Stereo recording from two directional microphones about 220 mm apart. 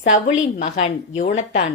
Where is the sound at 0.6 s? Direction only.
30° left (ahead or behind).